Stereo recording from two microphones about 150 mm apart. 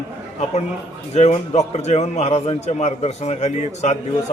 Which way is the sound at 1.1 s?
45° left (ahead or behind).